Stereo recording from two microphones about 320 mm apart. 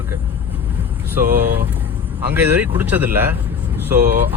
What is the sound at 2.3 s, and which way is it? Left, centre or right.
Speech, centre.